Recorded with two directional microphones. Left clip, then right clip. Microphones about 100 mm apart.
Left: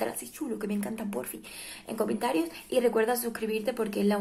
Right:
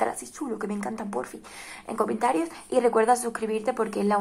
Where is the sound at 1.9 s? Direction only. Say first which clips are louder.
Right 5 dB; centre (ahead or behind).